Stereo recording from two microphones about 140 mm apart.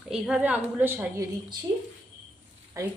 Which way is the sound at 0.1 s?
5° right (ahead or behind).